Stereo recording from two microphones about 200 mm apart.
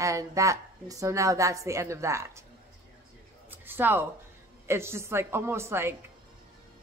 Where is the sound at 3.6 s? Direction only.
10° right (ahead or behind).